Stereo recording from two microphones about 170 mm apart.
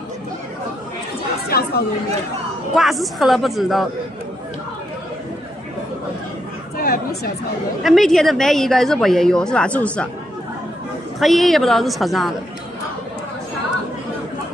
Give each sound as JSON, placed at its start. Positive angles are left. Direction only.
{"t": 1.5, "sound": "chatter", "side_deg": 65}
{"t": 2.7, "sound": "speech", "side_deg": 0}
{"t": 6.8, "sound": "speech", "side_deg": 60}
{"t": 7.8, "sound": "speech", "side_deg": 0}
{"t": 11.1, "sound": "speech", "side_deg": 0}